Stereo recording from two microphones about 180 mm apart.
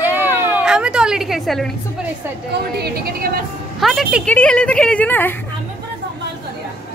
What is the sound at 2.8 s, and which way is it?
Speech, 60° right (ahead or behind).